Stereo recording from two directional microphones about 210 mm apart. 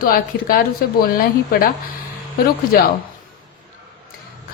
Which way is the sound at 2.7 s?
45° left (ahead or behind).